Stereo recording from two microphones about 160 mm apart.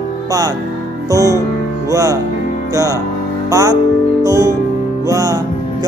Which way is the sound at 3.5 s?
20° right (ahead or behind).